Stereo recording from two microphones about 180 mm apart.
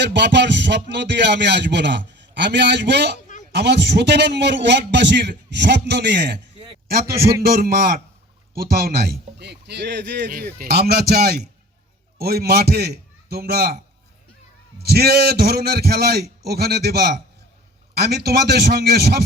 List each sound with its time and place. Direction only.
0.0 s speech: 70° right (ahead or behind)
6.8 s a man's voice: 60° right (ahead or behind)
14.8 s a man's voice: 60° right (ahead or behind)